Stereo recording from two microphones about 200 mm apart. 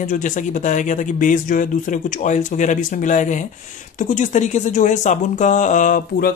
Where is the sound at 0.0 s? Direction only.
40° left (ahead or behind).